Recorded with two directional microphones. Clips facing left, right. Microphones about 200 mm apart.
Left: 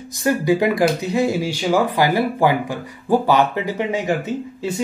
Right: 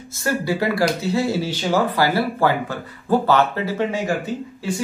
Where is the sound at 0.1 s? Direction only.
15° left (ahead or behind).